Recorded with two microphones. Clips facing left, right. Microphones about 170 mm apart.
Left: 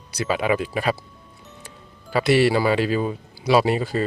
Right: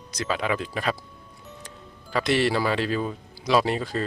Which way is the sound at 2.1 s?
5° left (ahead or behind).